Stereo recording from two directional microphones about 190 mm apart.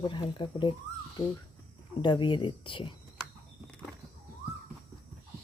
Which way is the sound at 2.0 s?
25° left (ahead or behind).